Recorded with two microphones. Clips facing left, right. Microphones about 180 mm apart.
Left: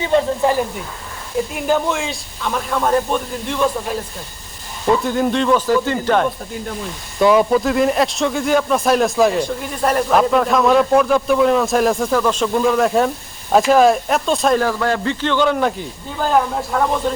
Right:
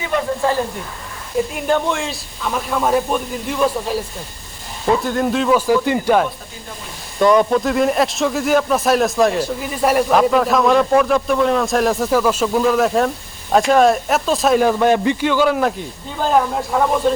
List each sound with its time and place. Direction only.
0.1 s speech: 25° left (ahead or behind)
1.5 s speech: centre (ahead or behind)
7.2 s speech: 5° left (ahead or behind)
14.6 s speech: 20° right (ahead or behind); by 17.0 s 5° right (ahead or behind)